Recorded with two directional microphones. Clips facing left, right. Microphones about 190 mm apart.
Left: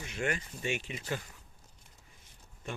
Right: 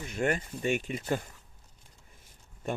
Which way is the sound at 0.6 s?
50° right (ahead or behind).